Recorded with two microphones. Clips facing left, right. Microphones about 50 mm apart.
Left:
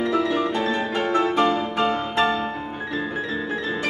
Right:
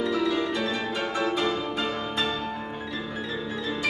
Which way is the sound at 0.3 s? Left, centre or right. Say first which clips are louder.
Left 4 dB; left.